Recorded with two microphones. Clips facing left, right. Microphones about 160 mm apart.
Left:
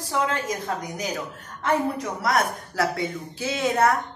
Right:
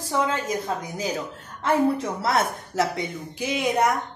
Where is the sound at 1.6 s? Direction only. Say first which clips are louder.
Right 3 dB; 30° right (ahead or behind).